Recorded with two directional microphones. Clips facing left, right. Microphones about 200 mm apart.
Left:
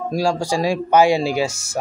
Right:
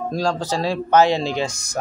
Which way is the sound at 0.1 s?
10° left (ahead or behind).